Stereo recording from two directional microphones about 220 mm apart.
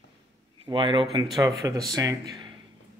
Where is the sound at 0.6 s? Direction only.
20° right (ahead or behind).